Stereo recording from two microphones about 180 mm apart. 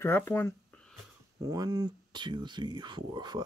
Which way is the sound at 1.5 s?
20° right (ahead or behind).